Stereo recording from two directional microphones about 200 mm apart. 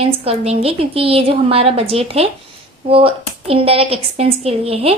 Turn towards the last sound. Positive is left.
turn(degrees=-30)  # may be behind; listen again after turning